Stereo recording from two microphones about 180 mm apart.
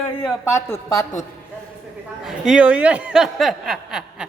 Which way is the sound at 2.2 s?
Centre (ahead or behind).